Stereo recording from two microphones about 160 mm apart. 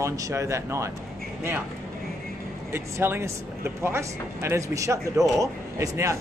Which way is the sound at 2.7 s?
15° right (ahead or behind).